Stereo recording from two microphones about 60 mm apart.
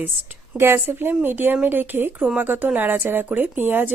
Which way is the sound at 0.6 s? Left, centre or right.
Right.